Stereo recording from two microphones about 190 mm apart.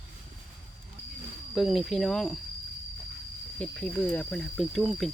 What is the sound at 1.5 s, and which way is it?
Speech, centre (ahead or behind).